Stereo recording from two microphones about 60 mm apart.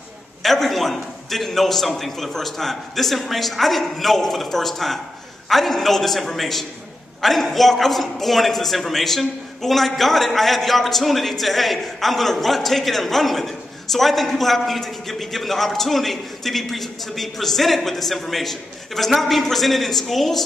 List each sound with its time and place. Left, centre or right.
0.4 s a man's voice: centre